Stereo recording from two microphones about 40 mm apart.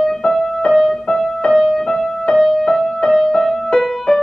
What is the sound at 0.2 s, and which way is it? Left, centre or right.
Music, centre.